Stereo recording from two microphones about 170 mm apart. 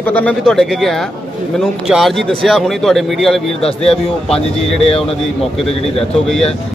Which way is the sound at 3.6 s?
35° left (ahead or behind).